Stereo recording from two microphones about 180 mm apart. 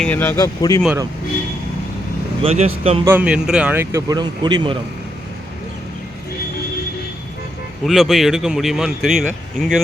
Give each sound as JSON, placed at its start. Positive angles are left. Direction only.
{"t": 0.0, "sound": "speech", "side_deg": 10}
{"t": 2.4, "sound": "speech", "side_deg": -35}
{"t": 3.0, "sound": "speech", "side_deg": -10}
{"t": 7.9, "sound": "speech", "side_deg": 0}